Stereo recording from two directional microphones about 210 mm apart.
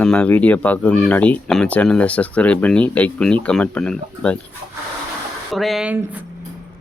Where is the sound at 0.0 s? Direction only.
5° left (ahead or behind).